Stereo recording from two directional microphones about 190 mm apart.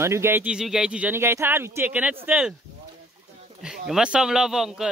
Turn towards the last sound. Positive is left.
turn(degrees=0)  # may be behind; listen again after turning